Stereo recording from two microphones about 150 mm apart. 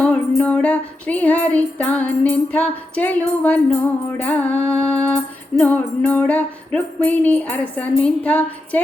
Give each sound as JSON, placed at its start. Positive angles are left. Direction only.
{"t": 0.0, "sound": "music", "side_deg": 5}